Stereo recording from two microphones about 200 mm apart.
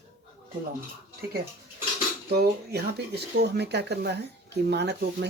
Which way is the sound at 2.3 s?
55° right (ahead or behind).